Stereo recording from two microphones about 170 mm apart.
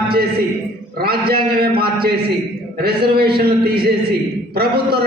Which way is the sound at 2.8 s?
65° right (ahead or behind).